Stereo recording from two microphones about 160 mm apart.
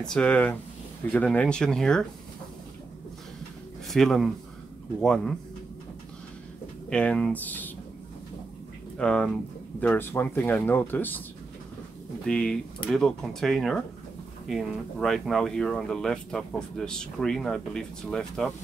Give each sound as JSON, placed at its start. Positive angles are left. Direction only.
{"t": 0.0, "sound": "speech", "side_deg": 5}
{"t": 3.8, "sound": "speech", "side_deg": 0}
{"t": 6.9, "sound": "speech", "side_deg": 5}
{"t": 8.9, "sound": "speech", "side_deg": 5}
{"t": 12.3, "sound": "speech", "side_deg": 5}